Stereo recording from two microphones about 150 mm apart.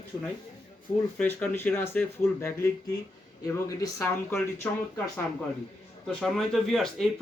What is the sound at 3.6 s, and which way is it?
A man's voice, 20° left (ahead or behind).